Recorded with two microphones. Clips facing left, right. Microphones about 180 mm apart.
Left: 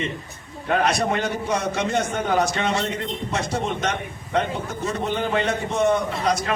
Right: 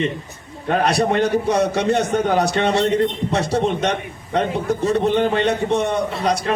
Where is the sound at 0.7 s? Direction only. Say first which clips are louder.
Right 3 dB; 35° right (ahead or behind).